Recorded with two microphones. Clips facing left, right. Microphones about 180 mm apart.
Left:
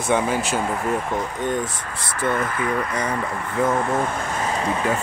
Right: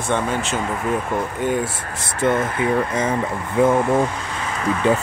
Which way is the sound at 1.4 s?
5° right (ahead or behind).